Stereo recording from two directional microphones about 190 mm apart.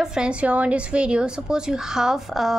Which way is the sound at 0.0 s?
5° right (ahead or behind).